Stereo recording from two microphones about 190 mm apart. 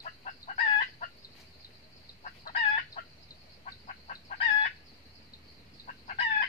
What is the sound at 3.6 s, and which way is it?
Chicken, 40° left (ahead or behind).